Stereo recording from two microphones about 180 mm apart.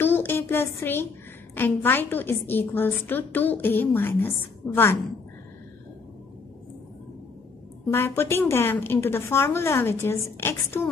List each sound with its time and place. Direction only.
0.0 s a woman's voice: 10° left (ahead or behind)
7.9 s a woman's voice: 15° left (ahead or behind)